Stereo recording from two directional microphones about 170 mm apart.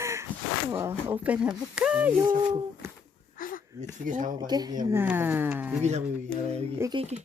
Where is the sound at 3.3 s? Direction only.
55° left (ahead or behind).